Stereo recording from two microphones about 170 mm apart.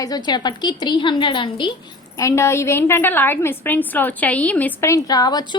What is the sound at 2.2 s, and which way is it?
A woman's voice, 15° left (ahead or behind).